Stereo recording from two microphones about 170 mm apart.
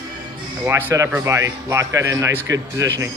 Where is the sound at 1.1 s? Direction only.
20° right (ahead or behind).